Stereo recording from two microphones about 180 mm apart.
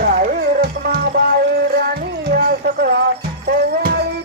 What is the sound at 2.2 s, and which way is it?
Music, 60° right (ahead or behind).